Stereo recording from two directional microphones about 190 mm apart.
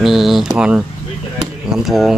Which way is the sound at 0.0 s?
Centre (ahead or behind).